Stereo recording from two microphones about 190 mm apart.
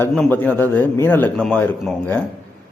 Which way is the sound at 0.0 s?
5° left (ahead or behind).